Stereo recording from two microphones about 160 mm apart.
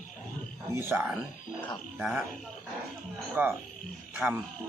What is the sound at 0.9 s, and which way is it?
Speech, 10° right (ahead or behind).